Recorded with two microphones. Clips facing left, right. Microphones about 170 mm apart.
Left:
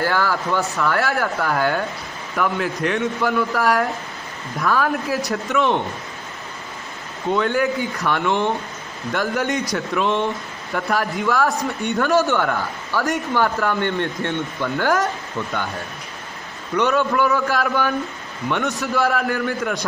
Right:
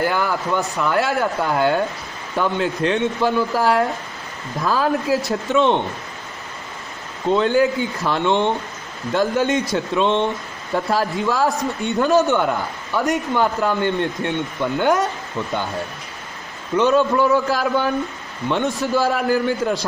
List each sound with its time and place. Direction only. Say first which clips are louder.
0.0 s a man's voice: even; 20° right (ahead or behind)
7.2 s a man's voice: right 3 dB; 25° right (ahead or behind)
16.7 s a man's voice: right 3 dB; 25° right (ahead or behind)